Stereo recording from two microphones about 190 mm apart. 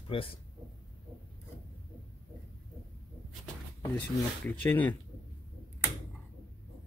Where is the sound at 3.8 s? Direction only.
10° left (ahead or behind).